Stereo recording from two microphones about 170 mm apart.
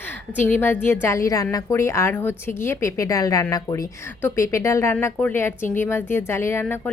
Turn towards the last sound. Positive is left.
turn(degrees=10)  # may be behind; listen again after turning